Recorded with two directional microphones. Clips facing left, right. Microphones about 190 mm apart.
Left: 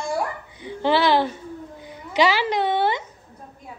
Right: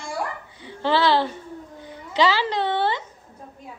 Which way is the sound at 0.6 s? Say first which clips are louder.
Left 1 dB; 15° left (ahead or behind).